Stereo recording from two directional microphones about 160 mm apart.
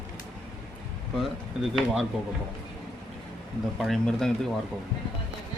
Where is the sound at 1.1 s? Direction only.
Centre (ahead or behind).